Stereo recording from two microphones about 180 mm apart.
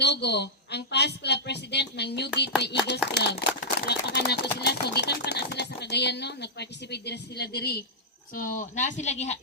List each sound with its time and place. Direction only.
0.0 s speech: 70° left (ahead or behind)
3.2 s a sound: 65° left (ahead or behind)
8.4 s speech: 45° left (ahead or behind)